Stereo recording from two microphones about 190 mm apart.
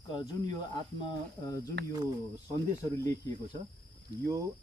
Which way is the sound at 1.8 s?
60° right (ahead or behind).